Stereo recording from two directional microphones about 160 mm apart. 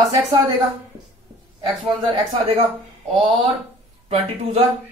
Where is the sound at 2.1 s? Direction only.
35° right (ahead or behind).